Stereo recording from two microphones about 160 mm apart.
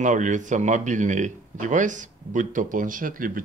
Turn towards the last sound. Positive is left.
turn(degrees=-60)  # may be behind; listen again after turning